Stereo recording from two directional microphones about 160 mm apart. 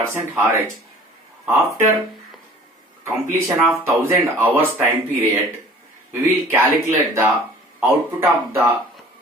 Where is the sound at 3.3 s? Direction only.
15° right (ahead or behind).